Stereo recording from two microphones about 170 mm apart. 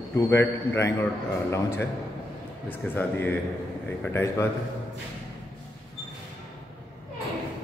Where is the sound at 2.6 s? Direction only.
10° left (ahead or behind).